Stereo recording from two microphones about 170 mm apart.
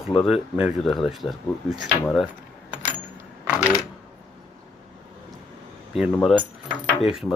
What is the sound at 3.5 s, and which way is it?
Coin, 5° right (ahead or behind).